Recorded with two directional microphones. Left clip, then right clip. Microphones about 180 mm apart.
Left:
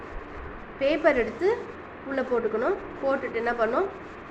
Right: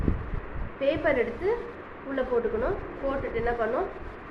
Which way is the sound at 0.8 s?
45° left (ahead or behind).